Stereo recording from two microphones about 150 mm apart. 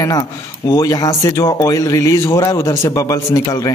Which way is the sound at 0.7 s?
25° left (ahead or behind).